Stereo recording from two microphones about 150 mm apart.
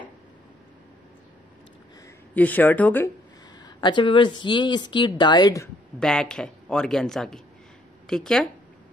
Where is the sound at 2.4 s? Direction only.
10° left (ahead or behind).